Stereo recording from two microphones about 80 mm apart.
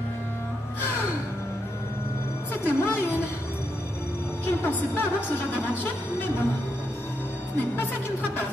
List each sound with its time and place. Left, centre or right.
2.5 s speech: left
4.5 s a woman's voice: left
7.5 s a woman's voice: left